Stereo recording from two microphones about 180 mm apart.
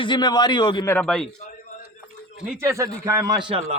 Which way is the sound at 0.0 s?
25° left (ahead or behind).